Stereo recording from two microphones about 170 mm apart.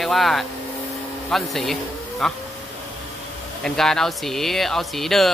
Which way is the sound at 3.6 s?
5° left (ahead or behind).